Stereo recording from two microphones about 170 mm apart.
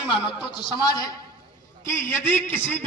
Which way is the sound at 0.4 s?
25° left (ahead or behind).